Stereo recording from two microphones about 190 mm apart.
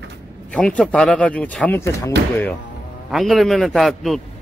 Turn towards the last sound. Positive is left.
turn(degrees=0)  # may be behind; listen again after turning